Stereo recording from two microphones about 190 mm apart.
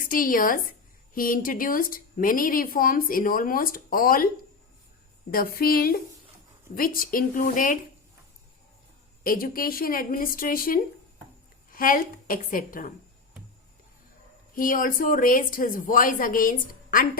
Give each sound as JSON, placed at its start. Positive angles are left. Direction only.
{"t": 0.0, "sound": "a woman's voice", "side_deg": 45}
{"t": 5.3, "sound": "a woman's voice", "side_deg": 50}
{"t": 9.2, "sound": "a woman's voice", "side_deg": 50}
{"t": 14.5, "sound": "a woman's voice", "side_deg": 45}